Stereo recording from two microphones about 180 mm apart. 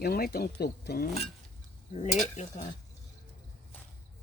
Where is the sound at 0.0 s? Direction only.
60° left (ahead or behind).